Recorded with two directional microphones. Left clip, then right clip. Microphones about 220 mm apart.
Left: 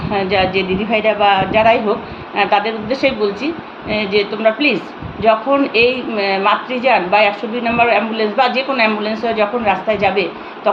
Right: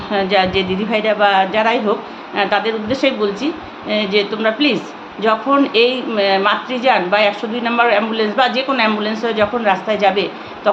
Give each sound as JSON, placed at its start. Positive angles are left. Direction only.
{"t": 0.1, "sound": "a woman's voice", "side_deg": -15}